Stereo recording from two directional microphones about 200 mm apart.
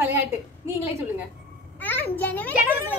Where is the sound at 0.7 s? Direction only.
15° right (ahead or behind).